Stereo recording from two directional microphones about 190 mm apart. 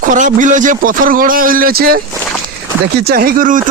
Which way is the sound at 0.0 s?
40° right (ahead or behind).